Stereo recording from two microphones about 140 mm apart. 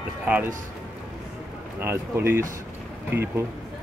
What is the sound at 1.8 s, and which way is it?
Speech, 15° right (ahead or behind).